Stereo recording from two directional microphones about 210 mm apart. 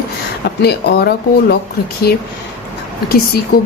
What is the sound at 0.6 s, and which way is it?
A woman's voice, 50° left (ahead or behind).